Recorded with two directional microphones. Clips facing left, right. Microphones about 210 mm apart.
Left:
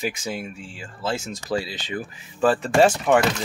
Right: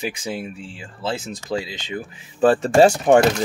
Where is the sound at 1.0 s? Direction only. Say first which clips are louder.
Right 1 dB; 30° right (ahead or behind).